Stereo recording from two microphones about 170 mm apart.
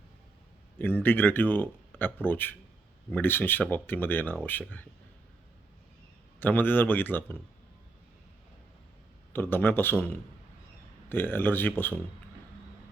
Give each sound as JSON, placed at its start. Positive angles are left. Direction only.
{"t": 1.0, "sound": "speech", "side_deg": 10}
{"t": 6.4, "sound": "speech", "side_deg": 10}
{"t": 9.3, "sound": "speech", "side_deg": 10}